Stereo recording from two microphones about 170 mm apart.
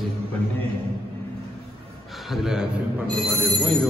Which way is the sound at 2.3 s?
5° right (ahead or behind).